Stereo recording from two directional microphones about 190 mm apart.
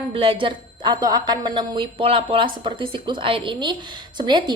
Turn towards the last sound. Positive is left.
turn(degrees=-25)  # may be behind; listen again after turning